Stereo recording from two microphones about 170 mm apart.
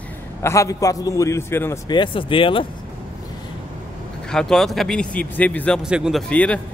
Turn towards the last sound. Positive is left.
turn(degrees=10)  # may be behind; listen again after turning